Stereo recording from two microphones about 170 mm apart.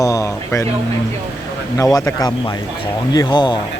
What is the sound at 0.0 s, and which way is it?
Speech, 20° left (ahead or behind).